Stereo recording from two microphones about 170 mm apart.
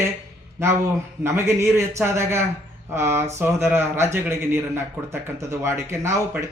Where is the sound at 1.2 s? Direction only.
15° right (ahead or behind).